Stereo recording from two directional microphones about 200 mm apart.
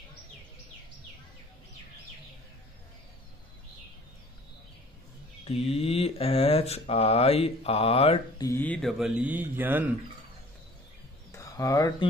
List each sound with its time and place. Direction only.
5.4 s speech: 30° left (ahead or behind)
8.5 s mantra: 10° left (ahead or behind); by 9.8 s 10° right (ahead or behind)
11.3 s speech: 15° left (ahead or behind)